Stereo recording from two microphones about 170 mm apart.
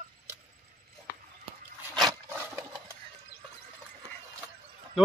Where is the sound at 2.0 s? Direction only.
20° right (ahead or behind).